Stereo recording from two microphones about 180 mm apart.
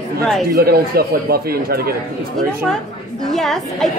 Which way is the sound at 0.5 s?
55° right (ahead or behind).